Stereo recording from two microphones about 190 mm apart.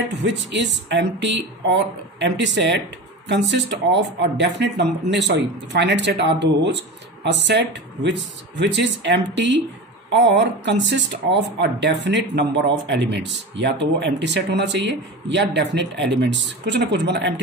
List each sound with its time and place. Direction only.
0.2 s speech: 70° right (ahead or behind)